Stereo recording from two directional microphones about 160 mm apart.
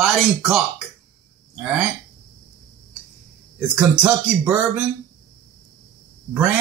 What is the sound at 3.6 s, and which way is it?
Speech, 10° right (ahead or behind).